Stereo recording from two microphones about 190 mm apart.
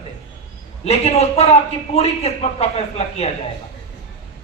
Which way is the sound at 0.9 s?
35° left (ahead or behind).